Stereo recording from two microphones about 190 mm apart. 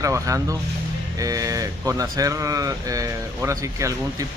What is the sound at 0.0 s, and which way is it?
Speech, 15° right (ahead or behind).